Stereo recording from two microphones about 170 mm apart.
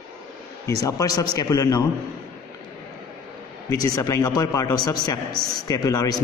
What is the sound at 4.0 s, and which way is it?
Speech, 20° left (ahead or behind).